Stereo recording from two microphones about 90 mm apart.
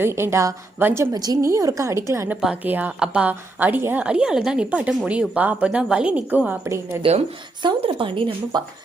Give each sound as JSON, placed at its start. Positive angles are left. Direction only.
{"t": 0.0, "sound": "a woman's voice", "side_deg": -30}
{"t": 1.1, "sound": "a woman's voice", "side_deg": -45}
{"t": 1.4, "sound": "a woman's voice", "side_deg": -35}
{"t": 2.6, "sound": "a woman's voice", "side_deg": -20}
{"t": 4.0, "sound": "speech", "side_deg": -10}
{"t": 7.0, "sound": "speech", "side_deg": -75}
{"t": 8.5, "sound": "a woman's voice", "side_deg": -50}